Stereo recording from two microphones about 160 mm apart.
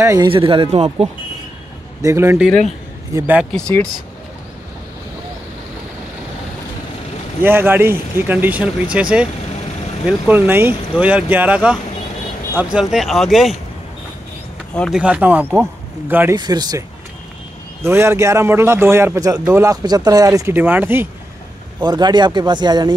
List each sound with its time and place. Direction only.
0.0 s a man's voice: 15° right (ahead or behind)
0.3 s speech: 35° right (ahead or behind)
2.0 s a man's voice: 20° right (ahead or behind)
3.5 s speech: 5° left (ahead or behind)
7.4 s a man's voice: 15° right (ahead or behind)
14.7 s speech: 5° left (ahead or behind)
15.0 s a man's voice: 10° right (ahead or behind)
16.3 s speech: 25° right (ahead or behind)
17.8 s a man's voice: 15° right (ahead or behind)
21.7 s speech: 25° right (ahead or behind)